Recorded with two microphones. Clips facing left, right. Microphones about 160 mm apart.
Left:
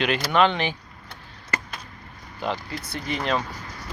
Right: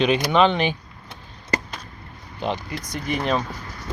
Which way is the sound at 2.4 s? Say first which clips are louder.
Right 2 dB; 20° right (ahead or behind).